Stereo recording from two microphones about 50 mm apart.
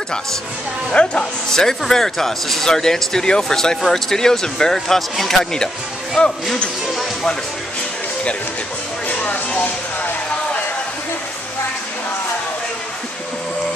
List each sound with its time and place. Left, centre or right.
0.9 s speech: centre
6.2 s speech: left
9.0 s a sound: left